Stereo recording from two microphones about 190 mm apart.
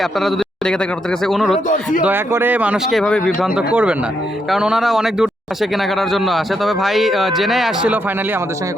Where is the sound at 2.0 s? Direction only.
10° right (ahead or behind).